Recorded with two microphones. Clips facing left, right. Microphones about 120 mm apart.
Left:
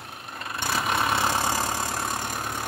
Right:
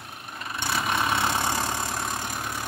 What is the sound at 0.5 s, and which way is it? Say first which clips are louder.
Vehicle: left 1 dB; 5° left (ahead or behind).